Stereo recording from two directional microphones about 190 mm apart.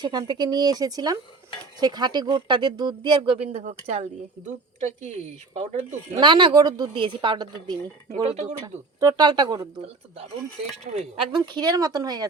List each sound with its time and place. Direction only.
0.0 s speech: 20° right (ahead or behind); by 6.0 s 35° right (ahead or behind)
6.1 s speech: 25° right (ahead or behind)
8.1 s speech: 35° right (ahead or behind)
8.6 s speech: 15° right (ahead or behind)